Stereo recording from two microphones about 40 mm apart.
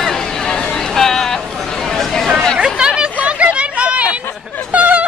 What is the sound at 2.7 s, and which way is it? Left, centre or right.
Chatter, centre.